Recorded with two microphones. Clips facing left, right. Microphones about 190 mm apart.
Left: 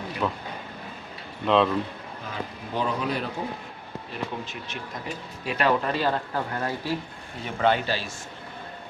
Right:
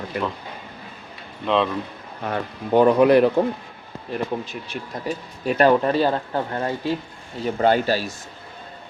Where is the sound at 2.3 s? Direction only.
65° right (ahead or behind).